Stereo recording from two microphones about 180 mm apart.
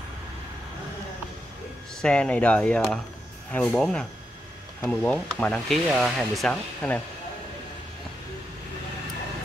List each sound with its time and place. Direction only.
2.0 s speech: 5° left (ahead or behind)